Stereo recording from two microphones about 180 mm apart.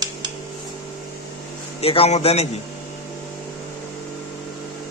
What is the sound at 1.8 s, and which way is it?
Speech, 35° left (ahead or behind).